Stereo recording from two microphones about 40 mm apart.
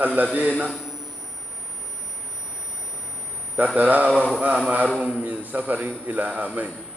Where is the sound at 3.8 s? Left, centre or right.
Right.